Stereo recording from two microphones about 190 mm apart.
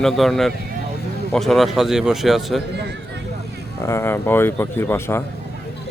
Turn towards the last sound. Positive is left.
turn(degrees=15)  # may be behind; listen again after turning